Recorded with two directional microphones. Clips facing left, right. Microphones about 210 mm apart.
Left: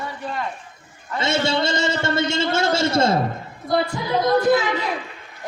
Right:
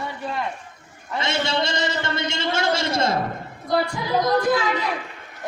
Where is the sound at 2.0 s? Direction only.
5° left (ahead or behind).